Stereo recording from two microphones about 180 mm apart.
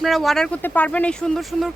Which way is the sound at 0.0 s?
Centre (ahead or behind).